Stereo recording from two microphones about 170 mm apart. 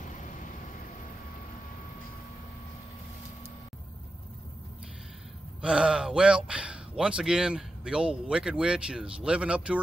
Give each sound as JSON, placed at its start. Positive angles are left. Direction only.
{"t": 5.6, "sound": "speech", "side_deg": -5}